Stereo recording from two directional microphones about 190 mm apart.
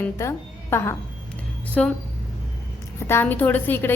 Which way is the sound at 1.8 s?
5° left (ahead or behind).